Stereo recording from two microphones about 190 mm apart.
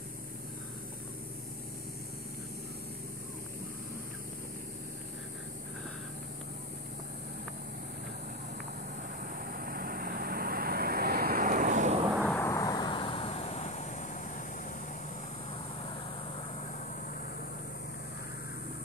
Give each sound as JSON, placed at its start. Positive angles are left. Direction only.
{"t": 9.2, "sound": "vehicle", "side_deg": -50}
{"t": 12.2, "sound": "vehicle", "side_deg": 10}